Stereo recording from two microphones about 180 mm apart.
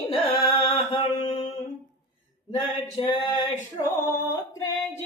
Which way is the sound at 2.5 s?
25° left (ahead or behind).